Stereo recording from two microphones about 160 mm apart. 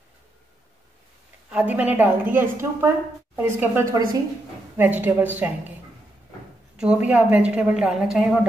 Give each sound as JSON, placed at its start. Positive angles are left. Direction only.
{"t": 1.5, "sound": "a woman's voice", "side_deg": -10}
{"t": 6.8, "sound": "a woman's voice", "side_deg": -10}